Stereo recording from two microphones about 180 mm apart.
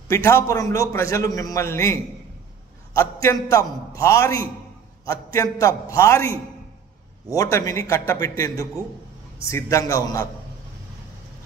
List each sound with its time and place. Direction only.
0.1 s a man's voice: 15° left (ahead or behind)
3.0 s a man's voice: 15° left (ahead or behind)